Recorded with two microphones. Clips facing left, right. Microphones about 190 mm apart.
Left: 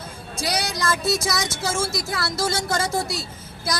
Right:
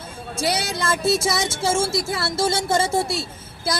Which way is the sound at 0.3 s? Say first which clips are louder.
Right 2 dB; 25° right (ahead or behind).